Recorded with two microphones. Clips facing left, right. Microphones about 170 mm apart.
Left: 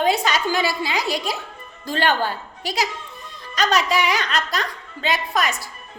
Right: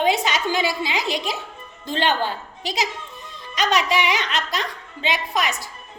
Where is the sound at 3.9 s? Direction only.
20° right (ahead or behind).